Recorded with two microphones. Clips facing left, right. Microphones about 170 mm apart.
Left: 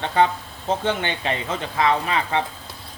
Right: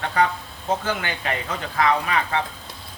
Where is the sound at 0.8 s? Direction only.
25° left (ahead or behind).